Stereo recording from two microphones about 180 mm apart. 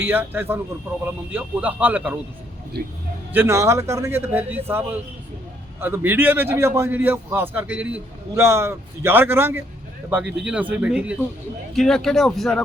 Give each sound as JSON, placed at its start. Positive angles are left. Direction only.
{"t": 0.0, "sound": "a man's voice", "side_deg": -10}
{"t": 2.8, "sound": "speech", "side_deg": -60}
{"t": 3.3, "sound": "a man's voice", "side_deg": -15}